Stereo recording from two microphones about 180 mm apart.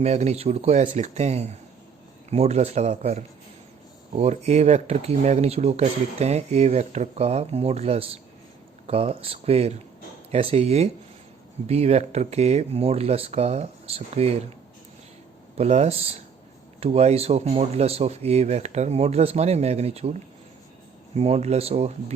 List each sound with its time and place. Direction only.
0.0 s speech: 40° right (ahead or behind)
15.5 s speech: 35° right (ahead or behind)